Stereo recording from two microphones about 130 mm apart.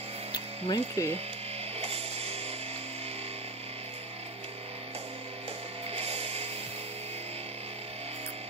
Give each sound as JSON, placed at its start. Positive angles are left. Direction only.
{"t": 0.3, "sound": "music", "side_deg": 30}
{"t": 1.8, "sound": "music", "side_deg": -50}
{"t": 5.9, "sound": "music", "side_deg": -50}